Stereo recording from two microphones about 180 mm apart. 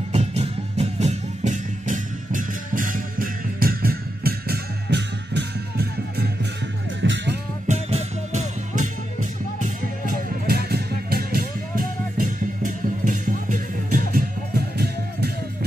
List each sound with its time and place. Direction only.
0.1 s music: 35° right (ahead or behind); by 6.2 s 65° right (ahead or behind)
7.0 s music: 90° right
7.6 s music: 40° right (ahead or behind)
9.6 s music: 55° right (ahead or behind)
12.6 s music: 45° right (ahead or behind)